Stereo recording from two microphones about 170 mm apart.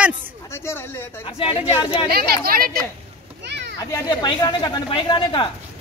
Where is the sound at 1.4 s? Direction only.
30° left (ahead or behind).